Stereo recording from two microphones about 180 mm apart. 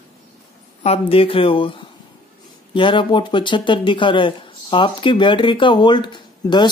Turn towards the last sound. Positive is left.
turn(degrees=25)  # may be behind; listen again after turning